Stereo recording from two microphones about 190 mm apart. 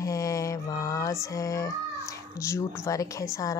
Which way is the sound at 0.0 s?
15° left (ahead or behind).